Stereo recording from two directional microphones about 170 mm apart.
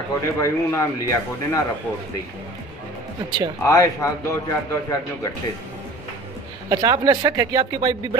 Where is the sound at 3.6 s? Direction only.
20° left (ahead or behind).